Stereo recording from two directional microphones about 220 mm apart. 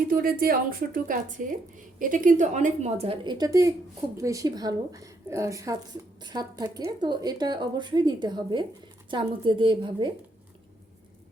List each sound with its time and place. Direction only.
0.1 s a woman's voice: 40° right (ahead or behind); by 10.1 s 20° right (ahead or behind)